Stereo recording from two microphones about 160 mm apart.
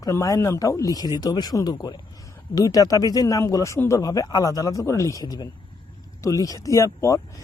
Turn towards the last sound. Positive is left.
turn(degrees=20)  # may be behind; listen again after turning